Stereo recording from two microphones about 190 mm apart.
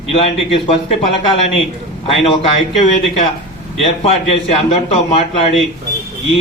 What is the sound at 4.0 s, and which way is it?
A man's voice, 30° left (ahead or behind).